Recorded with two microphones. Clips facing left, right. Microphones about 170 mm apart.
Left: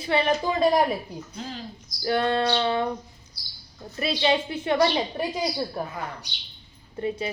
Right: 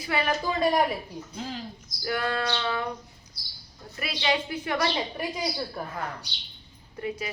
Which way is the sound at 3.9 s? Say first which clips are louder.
Left 5 dB; 30° left (ahead or behind).